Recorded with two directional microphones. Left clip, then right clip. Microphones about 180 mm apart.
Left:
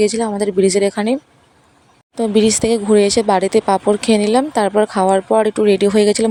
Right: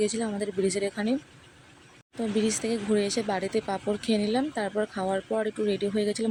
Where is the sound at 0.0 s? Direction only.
40° left (ahead or behind).